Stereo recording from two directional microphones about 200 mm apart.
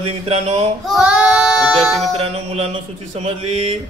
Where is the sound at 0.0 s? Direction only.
30° right (ahead or behind).